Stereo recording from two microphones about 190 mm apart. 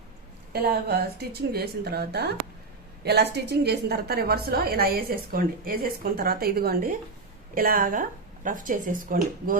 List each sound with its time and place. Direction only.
0.5 s a woman's voice: 55° right (ahead or behind)